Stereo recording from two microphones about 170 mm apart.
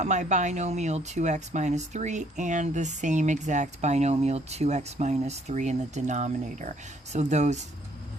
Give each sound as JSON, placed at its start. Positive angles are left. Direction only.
{"t": 0.0, "sound": "speech", "side_deg": -45}